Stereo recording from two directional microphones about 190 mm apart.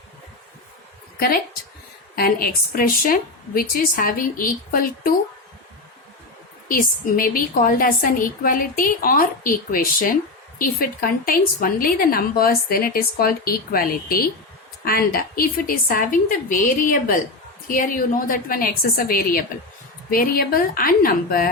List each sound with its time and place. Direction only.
2.1 s a woman's voice: 50° left (ahead or behind)
6.7 s a woman's voice: 50° left (ahead or behind)